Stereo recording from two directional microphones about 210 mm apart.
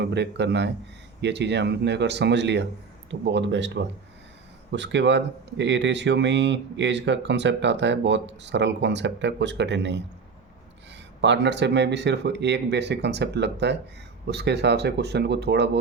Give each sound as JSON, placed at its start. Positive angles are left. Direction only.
{"t": 0.0, "sound": "speech", "side_deg": -55}
{"t": 4.7, "sound": "speech", "side_deg": -60}
{"t": 11.2, "sound": "speech", "side_deg": -55}